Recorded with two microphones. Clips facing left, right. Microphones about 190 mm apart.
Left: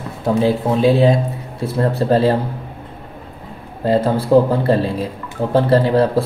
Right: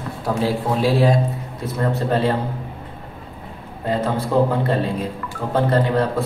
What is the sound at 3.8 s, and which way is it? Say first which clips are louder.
Speech: left 6 dB; 35° left (ahead or behind).